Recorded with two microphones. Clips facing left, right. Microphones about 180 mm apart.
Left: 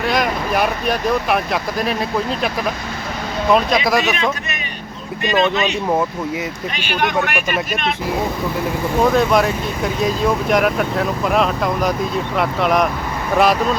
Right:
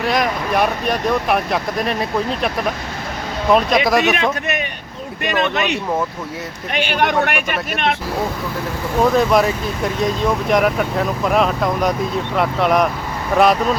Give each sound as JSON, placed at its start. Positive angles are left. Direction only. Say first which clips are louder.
{"t": 0.0, "sound": "speech", "louder": "even", "side_deg": 0}
{"t": 3.5, "sound": "speech", "louder": "right 1 dB", "side_deg": 0}
{"t": 4.0, "sound": "a man's voice", "louder": "right 2 dB", "side_deg": -60}
{"t": 6.7, "sound": "a man's voice", "louder": "right 3 dB", "side_deg": -60}
{"t": 9.0, "sound": "speech", "louder": "right 1 dB", "side_deg": 0}